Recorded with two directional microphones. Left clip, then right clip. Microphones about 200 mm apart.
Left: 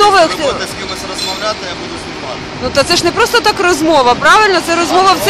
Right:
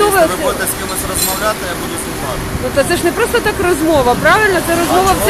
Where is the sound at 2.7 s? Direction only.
25° left (ahead or behind).